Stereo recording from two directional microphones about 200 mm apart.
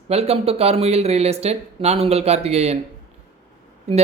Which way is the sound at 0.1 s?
30° right (ahead or behind).